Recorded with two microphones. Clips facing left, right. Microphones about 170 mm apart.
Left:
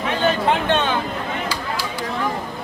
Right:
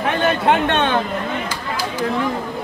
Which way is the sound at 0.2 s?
60° right (ahead or behind).